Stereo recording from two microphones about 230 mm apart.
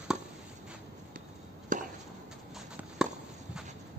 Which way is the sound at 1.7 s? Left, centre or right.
Right.